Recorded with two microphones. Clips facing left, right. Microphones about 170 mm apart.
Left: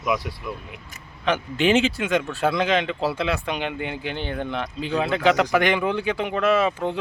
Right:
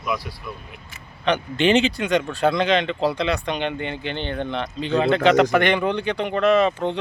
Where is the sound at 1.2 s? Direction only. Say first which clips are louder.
Right 1 dB; 5° left (ahead or behind).